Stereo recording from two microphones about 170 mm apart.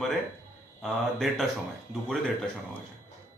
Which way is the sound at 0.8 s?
Centre (ahead or behind).